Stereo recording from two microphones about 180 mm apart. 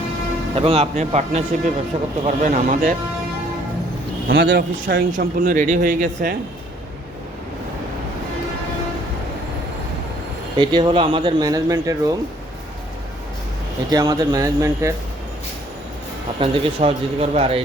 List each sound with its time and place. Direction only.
0.5 s a man's voice: 30° right (ahead or behind)
4.4 s speech: 90° right
4.9 s speech: 45° right (ahead or behind)
10.6 s speech: 25° right (ahead or behind)
13.9 s speech: 20° right (ahead or behind)
16.4 s a man's voice: 35° right (ahead or behind)